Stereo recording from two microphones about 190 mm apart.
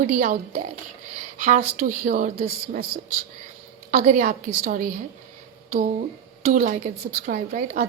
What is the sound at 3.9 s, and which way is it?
Speech, 40° right (ahead or behind).